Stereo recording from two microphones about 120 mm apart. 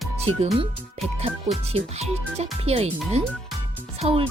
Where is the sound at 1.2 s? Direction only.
60° right (ahead or behind).